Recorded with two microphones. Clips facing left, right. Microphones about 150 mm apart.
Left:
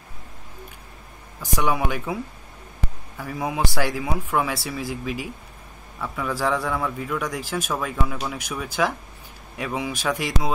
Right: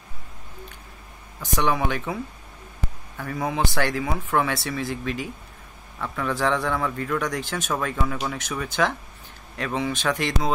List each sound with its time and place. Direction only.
1.4 s speech: 10° left (ahead or behind)
3.2 s a man's voice: 5° left (ahead or behind)